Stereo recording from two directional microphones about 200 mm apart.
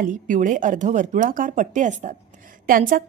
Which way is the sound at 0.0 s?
40° right (ahead or behind).